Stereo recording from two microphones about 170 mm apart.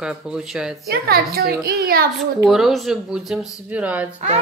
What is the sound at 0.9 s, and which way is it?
A child's voice, 65° right (ahead or behind).